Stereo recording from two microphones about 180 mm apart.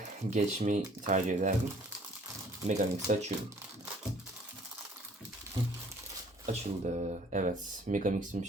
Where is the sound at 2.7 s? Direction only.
40° right (ahead or behind).